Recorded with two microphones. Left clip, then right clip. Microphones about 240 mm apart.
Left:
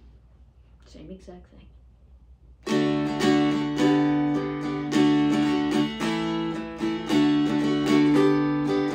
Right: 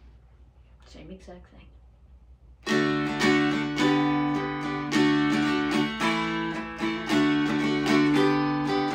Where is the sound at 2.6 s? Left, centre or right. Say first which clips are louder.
Left 1 dB; centre.